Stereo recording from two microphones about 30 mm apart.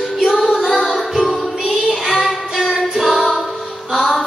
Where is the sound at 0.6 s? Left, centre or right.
Centre.